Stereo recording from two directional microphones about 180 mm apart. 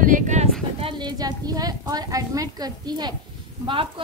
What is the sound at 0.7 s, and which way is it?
A woman's voice, 25° right (ahead or behind).